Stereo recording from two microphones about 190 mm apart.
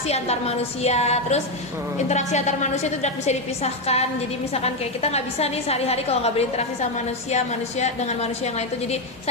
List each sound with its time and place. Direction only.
0.1 s a woman's voice: 35° left (ahead or behind)